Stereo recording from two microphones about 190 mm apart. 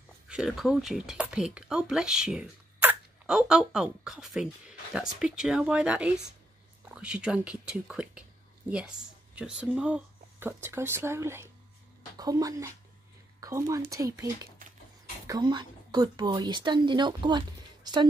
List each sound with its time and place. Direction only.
0.3 s a woman's voice: 5° right (ahead or behind); by 18.0 s 25° right (ahead or behind)